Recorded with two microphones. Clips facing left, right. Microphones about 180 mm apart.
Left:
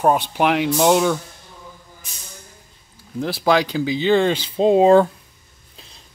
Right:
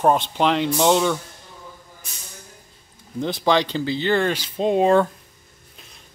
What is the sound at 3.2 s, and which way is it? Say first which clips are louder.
Speech: left 2 dB; 5° left (ahead or behind).